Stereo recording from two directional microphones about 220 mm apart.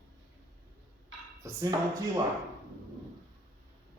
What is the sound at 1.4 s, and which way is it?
Speech, 15° right (ahead or behind).